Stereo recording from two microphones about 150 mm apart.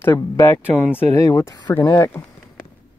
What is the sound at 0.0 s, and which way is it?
Speech, 20° left (ahead or behind).